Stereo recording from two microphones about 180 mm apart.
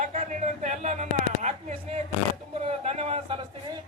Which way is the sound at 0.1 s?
40° right (ahead or behind).